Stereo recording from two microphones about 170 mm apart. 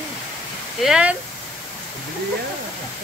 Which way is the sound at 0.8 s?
5° right (ahead or behind).